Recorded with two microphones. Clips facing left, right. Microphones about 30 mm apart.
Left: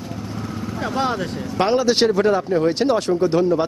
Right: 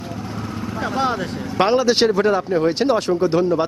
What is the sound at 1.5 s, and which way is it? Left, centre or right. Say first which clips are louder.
Speech: right 2 dB; centre.